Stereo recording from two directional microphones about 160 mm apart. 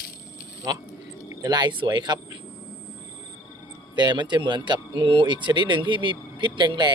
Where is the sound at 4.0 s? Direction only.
30° right (ahead or behind).